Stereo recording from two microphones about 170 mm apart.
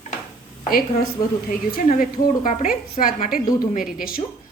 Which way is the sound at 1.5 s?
50° left (ahead or behind).